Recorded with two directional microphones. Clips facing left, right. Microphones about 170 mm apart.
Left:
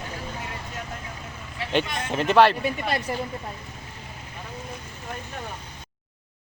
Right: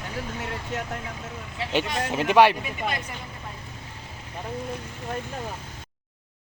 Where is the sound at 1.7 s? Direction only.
10° right (ahead or behind).